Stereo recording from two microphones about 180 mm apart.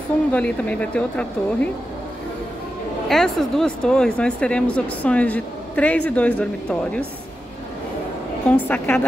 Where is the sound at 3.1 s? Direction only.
Centre (ahead or behind).